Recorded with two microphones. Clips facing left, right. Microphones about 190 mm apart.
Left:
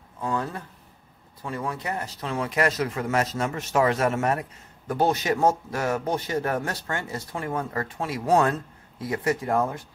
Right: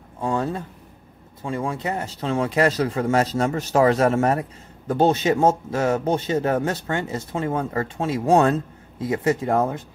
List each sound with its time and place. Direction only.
0.2 s speech: 30° right (ahead or behind)